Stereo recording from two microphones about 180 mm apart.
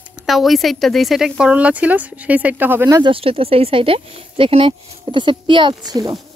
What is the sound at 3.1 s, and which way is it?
Speech, 30° right (ahead or behind).